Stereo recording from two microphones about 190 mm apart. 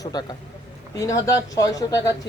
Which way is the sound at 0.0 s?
20° left (ahead or behind).